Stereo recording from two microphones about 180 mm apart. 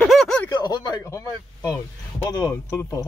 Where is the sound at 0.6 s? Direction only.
25° left (ahead or behind).